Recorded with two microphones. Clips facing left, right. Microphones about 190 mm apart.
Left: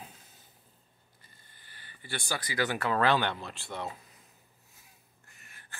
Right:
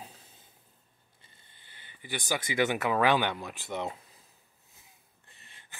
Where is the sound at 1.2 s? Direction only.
20° right (ahead or behind).